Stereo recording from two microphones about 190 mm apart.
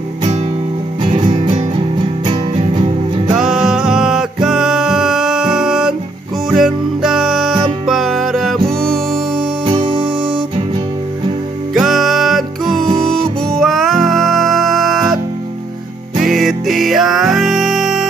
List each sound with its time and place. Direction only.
1.0 s music: 30° right (ahead or behind)
3.3 s music: 5° right (ahead or behind)
9.7 s music: 25° right (ahead or behind)
11.7 s music: centre (ahead or behind)
16.3 s music: centre (ahead or behind)